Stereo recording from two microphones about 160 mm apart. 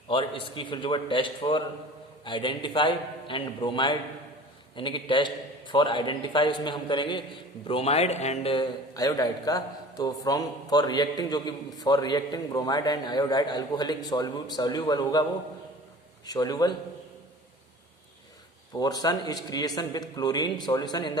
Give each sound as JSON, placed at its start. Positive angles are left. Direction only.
{"t": 0.1, "sound": "a man's voice", "side_deg": 35}
{"t": 8.5, "sound": "a man's voice", "side_deg": 25}
{"t": 16.2, "sound": "a man's voice", "side_deg": 25}
{"t": 18.8, "sound": "a man's voice", "side_deg": 25}